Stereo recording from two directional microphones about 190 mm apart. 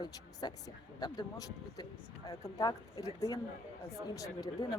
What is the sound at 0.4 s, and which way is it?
Speech, 20° left (ahead or behind).